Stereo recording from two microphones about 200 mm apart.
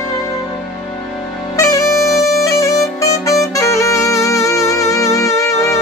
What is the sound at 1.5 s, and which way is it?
Music, 15° left (ahead or behind).